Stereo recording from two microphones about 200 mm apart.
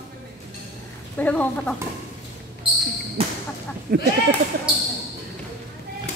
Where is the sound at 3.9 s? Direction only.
45° right (ahead or behind).